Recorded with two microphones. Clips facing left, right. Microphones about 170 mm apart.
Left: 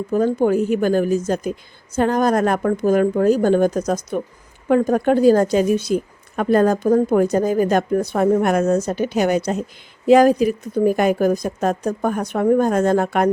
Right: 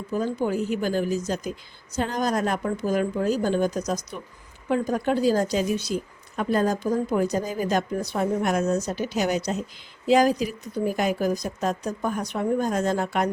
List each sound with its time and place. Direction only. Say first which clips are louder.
0.1 s a woman's voice: left 8 dB; 55° left (ahead or behind)